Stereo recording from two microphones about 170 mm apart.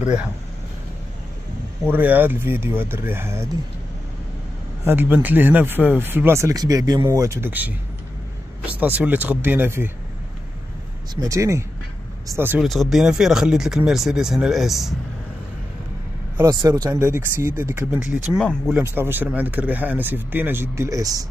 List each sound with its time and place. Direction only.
0.0 s speech: 5° right (ahead or behind)
1.9 s speech: 10° right (ahead or behind)
4.8 s speech: 10° right (ahead or behind)
8.7 s speech: 10° right (ahead or behind)
11.1 s speech: 20° right (ahead or behind)
12.6 s speech: centre (ahead or behind)
16.4 s speech: 25° right (ahead or behind)